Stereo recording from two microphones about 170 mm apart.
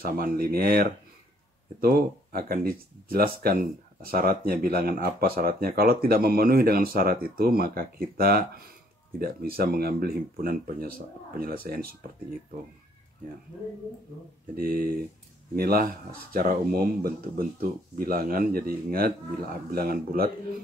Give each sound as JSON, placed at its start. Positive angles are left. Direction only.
{"t": 0.0, "sound": "speech", "side_deg": -60}
{"t": 14.5, "sound": "speech", "side_deg": -60}